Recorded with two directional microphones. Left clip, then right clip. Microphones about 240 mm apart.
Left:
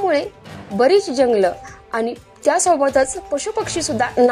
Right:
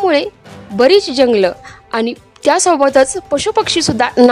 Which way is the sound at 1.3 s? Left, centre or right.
Right.